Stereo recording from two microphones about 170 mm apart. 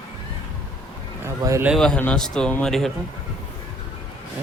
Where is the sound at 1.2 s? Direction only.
15° right (ahead or behind).